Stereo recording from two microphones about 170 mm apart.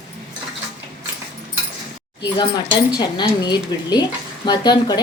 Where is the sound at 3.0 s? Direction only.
25° left (ahead or behind).